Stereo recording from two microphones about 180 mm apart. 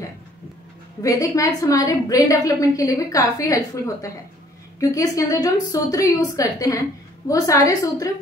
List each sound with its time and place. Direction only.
1.0 s a woman's voice: 20° left (ahead or behind)